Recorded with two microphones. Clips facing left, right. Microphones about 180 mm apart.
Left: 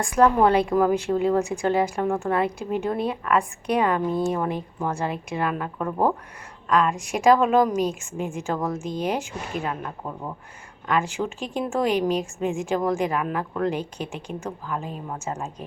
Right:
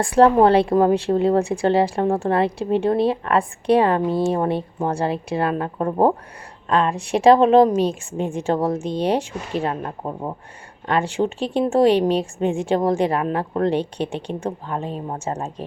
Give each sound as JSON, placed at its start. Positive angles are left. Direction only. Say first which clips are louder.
{"t": 0.0, "sound": "a woman's voice", "louder": "right 4 dB", "side_deg": -30}